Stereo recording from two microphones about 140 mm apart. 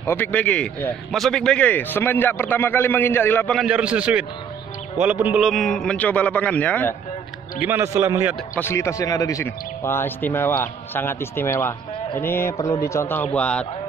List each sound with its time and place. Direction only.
0.0 s speech: 15° left (ahead or behind)
3.5 s a man's voice: 5° right (ahead or behind)
5.4 s speech: centre (ahead or behind)
7.6 s a man's voice: 15° right (ahead or behind)
8.5 s speech: 20° left (ahead or behind)